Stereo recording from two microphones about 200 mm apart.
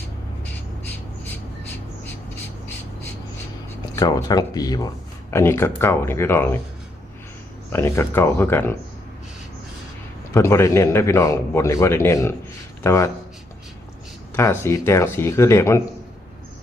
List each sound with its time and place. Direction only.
3.9 s a man's voice: 20° left (ahead or behind)
7.7 s a man's voice: 10° left (ahead or behind)
10.3 s a man's voice: 15° left (ahead or behind)
14.3 s a man's voice: 10° left (ahead or behind)